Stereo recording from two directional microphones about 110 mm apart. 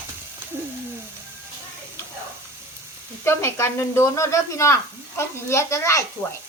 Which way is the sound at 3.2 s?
25° left (ahead or behind).